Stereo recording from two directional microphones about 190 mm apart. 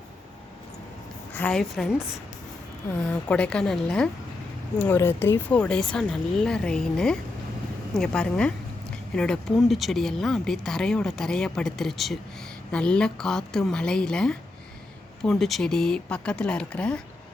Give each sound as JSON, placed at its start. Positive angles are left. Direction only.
{"t": 1.3, "sound": "speech", "side_deg": 10}
{"t": 3.2, "sound": "speech", "side_deg": 5}